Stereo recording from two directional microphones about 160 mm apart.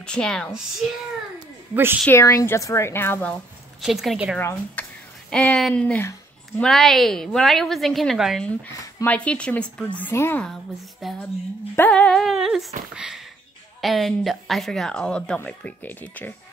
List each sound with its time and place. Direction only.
0.0 s a woman's voice: 5° left (ahead or behind)
1.7 s a woman's voice: 15° right (ahead or behind)
2.0 s a woman's voice: 15° left (ahead or behind)
3.8 s a woman's voice: centre (ahead or behind)
4.4 s a woman's voice: 15° left (ahead or behind)
11.0 s a woman's voice: centre (ahead or behind)
11.7 s a woman's voice: 10° left (ahead or behind)